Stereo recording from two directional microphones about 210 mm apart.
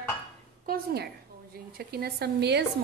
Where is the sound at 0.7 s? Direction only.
45° right (ahead or behind).